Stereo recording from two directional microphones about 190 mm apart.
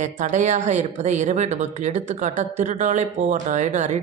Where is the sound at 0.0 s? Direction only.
40° right (ahead or behind).